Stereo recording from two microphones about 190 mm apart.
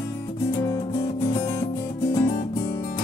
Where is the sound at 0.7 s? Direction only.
15° left (ahead or behind).